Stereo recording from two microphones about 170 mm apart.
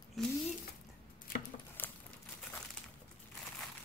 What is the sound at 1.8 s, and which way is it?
Crumpling, 10° left (ahead or behind).